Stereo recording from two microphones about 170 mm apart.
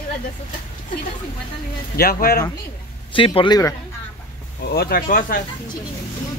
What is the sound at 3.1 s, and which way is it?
Speech, 30° left (ahead or behind).